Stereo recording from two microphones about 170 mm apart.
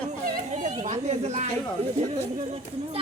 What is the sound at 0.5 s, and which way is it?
Chatter, 45° right (ahead or behind).